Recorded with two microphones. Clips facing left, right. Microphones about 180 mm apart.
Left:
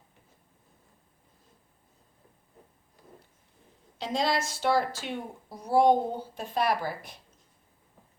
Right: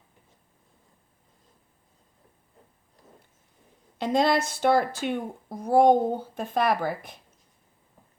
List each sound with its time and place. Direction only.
3.9 s speech: 55° right (ahead or behind)